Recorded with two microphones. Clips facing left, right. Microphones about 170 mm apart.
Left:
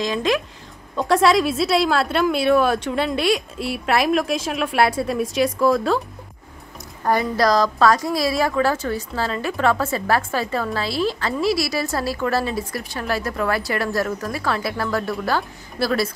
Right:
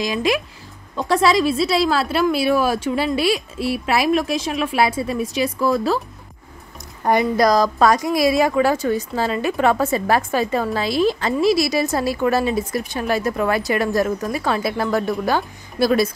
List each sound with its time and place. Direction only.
0.0 s a woman's voice: 10° right (ahead or behind)
7.1 s a woman's voice: 15° right (ahead or behind)